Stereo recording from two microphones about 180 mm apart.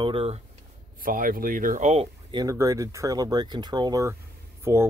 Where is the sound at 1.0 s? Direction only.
50° right (ahead or behind).